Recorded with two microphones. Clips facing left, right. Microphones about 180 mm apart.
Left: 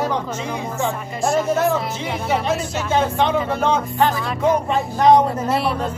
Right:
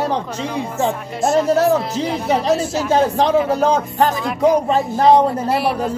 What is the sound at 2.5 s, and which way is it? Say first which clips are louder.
Speech: right 4 dB; 35° right (ahead or behind).